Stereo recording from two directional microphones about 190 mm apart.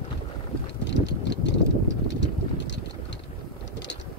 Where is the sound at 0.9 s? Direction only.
70° left (ahead or behind).